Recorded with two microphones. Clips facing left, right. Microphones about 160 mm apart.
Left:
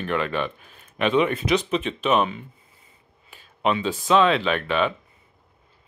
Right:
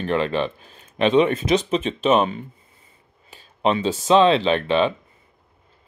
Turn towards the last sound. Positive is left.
turn(degrees=-30)  # may be behind; listen again after turning